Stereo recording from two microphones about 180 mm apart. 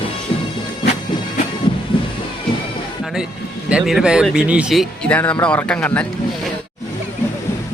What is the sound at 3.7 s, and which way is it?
Speech, 5° right (ahead or behind).